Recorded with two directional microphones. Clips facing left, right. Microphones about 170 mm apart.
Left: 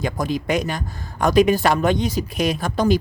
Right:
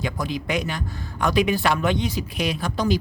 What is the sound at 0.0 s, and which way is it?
Speech, 45° left (ahead or behind).